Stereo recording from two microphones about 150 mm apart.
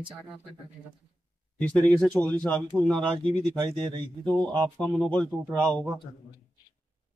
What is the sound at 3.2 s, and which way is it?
Speech, 35° right (ahead or behind).